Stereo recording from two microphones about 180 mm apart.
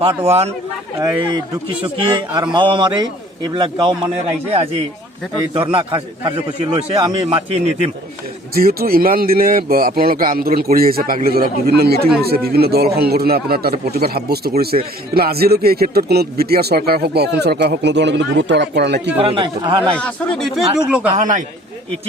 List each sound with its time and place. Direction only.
0.3 s a man's voice: 35° right (ahead or behind)
0.9 s a man's voice: 20° right (ahead or behind)
5.5 s a man's voice: 25° right (ahead or behind)
8.5 s speech: 55° right (ahead or behind)
19.1 s a man's voice: 30° right (ahead or behind)
20.0 s speech: 5° left (ahead or behind)
20.7 s speech: 5° right (ahead or behind)
21.2 s a man's voice: 45° right (ahead or behind)